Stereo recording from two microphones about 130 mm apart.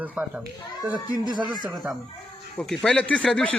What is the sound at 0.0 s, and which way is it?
Speech, 15° right (ahead or behind).